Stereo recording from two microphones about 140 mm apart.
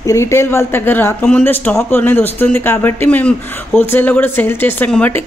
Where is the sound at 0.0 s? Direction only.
20° left (ahead or behind).